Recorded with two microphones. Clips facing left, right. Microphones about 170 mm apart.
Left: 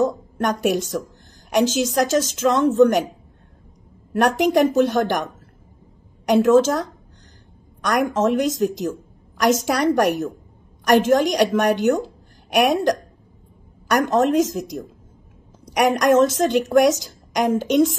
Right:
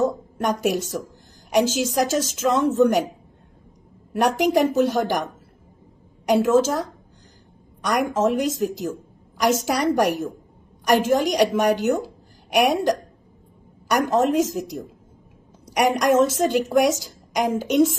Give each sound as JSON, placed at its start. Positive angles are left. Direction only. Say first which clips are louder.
{"t": 0.0, "sound": "a woman's voice", "louder": "left 2 dB", "side_deg": -5}
{"t": 4.1, "sound": "a woman's voice", "louder": "left 2 dB", "side_deg": -5}
{"t": 8.0, "sound": "a woman's voice", "louder": "left 2 dB", "side_deg": -5}
{"t": 9.8, "sound": "a woman's voice", "louder": "left 2 dB", "side_deg": 55}
{"t": 10.9, "sound": "a woman's voice", "louder": "left 3 dB", "side_deg": -5}
{"t": 14.0, "sound": "a woman's voice", "louder": "left 2 dB", "side_deg": -5}